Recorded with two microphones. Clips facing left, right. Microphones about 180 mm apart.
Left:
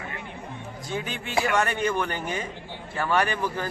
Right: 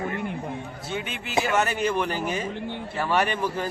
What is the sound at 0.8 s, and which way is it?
Speech, centre (ahead or behind).